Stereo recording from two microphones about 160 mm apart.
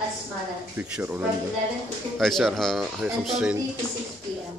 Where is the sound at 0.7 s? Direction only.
10° right (ahead or behind).